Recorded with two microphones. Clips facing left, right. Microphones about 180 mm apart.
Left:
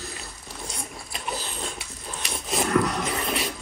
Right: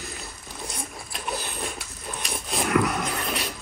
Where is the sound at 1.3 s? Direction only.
15° right (ahead or behind).